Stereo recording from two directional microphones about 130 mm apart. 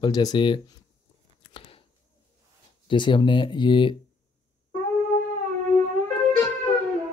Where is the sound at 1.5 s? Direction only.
45° left (ahead or behind).